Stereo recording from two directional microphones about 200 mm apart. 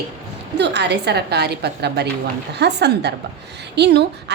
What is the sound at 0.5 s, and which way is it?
A woman's voice, 60° right (ahead or behind).